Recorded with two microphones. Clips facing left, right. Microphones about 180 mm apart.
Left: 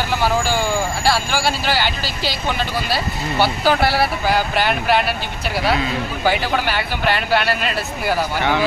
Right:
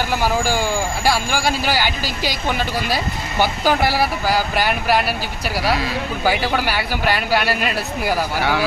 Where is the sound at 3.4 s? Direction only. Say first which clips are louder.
Left 1 dB; 15° right (ahead or behind).